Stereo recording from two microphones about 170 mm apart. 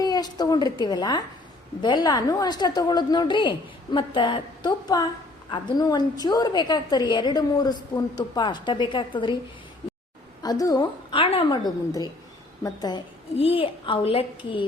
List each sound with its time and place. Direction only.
0.0 s a woman's voice: 25° left (ahead or behind)
10.4 s a woman's voice: 20° left (ahead or behind)
11.6 s a woman's voice: 20° left (ahead or behind)
13.3 s a child's voice: 35° left (ahead or behind)